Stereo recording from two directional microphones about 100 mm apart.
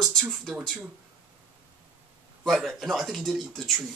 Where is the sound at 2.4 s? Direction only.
Centre (ahead or behind).